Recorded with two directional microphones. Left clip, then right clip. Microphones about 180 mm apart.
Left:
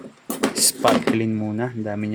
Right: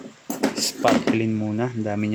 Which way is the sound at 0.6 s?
10° left (ahead or behind).